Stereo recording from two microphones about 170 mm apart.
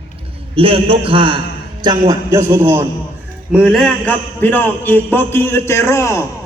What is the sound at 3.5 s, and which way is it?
Jingle bell, 5° right (ahead or behind).